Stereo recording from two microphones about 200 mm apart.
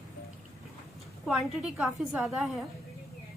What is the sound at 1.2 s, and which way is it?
A woman's voice, centre (ahead or behind).